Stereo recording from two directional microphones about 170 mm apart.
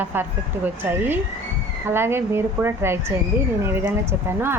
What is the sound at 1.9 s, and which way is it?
A woman's voice, 15° right (ahead or behind).